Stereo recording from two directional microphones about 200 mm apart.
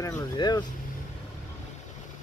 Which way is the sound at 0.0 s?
20° left (ahead or behind).